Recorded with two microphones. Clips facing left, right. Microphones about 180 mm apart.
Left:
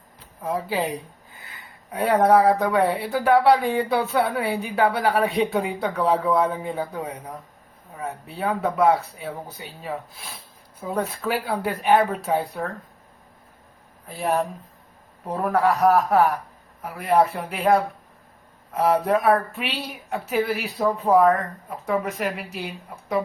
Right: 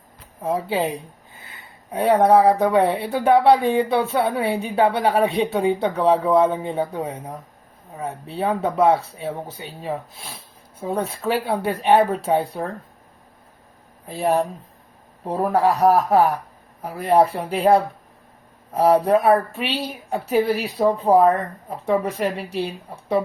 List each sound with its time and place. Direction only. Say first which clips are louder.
0.4 s speech: right 3 dB; 25° right (ahead or behind)
15.2 s speech: right 2 dB; 30° right (ahead or behind)